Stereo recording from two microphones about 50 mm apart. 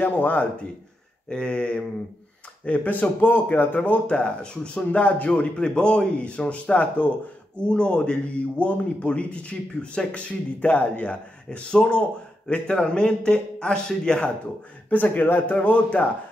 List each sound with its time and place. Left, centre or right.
0.0 s speech: left
1.3 s speech: centre
4.2 s speech: centre
11.5 s a man's voice: centre
14.9 s speech: left